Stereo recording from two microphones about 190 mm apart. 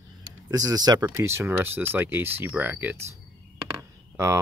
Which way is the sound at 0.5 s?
20° right (ahead or behind).